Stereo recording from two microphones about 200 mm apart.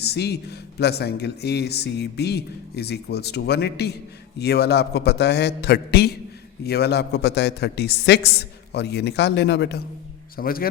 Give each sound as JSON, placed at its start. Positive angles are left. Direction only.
{"t": 0.0, "sound": "speech", "side_deg": 55}
{"t": 10.3, "sound": "a man's voice", "side_deg": 45}